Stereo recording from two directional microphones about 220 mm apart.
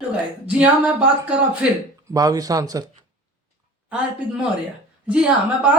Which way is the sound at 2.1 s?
15° right (ahead or behind).